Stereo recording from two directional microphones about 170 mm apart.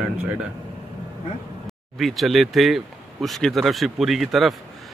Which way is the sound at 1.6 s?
Centre (ahead or behind).